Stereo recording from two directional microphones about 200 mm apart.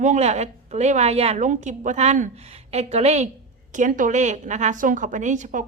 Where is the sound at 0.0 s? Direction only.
35° right (ahead or behind).